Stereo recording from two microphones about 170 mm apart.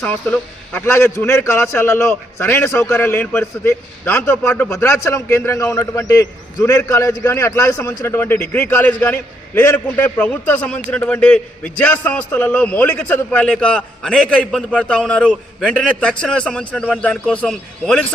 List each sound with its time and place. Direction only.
0.0 s a man's voice: 10° left (ahead or behind)